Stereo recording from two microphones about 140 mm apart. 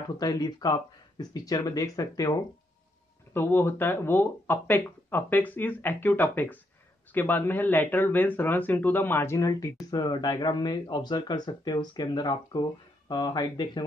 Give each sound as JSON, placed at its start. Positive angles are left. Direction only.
{"t": 0.2, "sound": "speech", "side_deg": 25}